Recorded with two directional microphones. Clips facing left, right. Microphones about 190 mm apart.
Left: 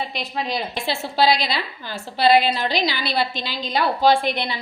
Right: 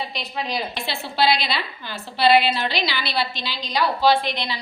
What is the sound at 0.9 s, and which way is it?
A woman's voice, 45° left (ahead or behind).